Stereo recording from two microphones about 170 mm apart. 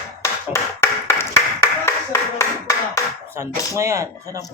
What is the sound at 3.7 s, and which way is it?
Speech, 15° right (ahead or behind).